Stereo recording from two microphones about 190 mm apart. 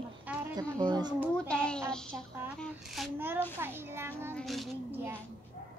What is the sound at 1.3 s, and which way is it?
Speech, 5° left (ahead or behind).